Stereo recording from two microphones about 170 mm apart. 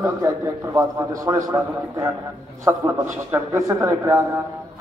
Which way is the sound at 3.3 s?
20° right (ahead or behind).